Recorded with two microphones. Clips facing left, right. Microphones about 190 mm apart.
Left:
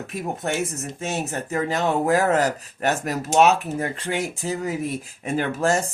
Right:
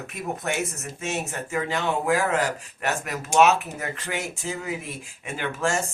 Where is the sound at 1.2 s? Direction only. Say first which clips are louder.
Left 3 dB; 35° left (ahead or behind).